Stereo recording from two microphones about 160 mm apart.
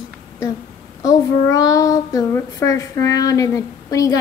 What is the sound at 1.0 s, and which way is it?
A child's voice, 20° left (ahead or behind).